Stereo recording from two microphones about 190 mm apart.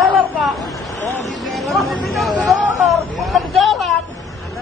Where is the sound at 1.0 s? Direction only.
15° left (ahead or behind).